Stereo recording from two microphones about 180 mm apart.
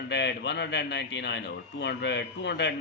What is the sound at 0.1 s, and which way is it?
A man's voice, 70° left (ahead or behind).